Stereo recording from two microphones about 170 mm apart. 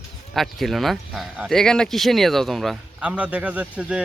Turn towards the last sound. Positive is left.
turn(degrees=-5)  # may be behind; listen again after turning